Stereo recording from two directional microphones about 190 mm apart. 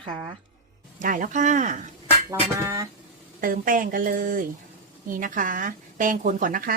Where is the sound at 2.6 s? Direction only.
15° right (ahead or behind).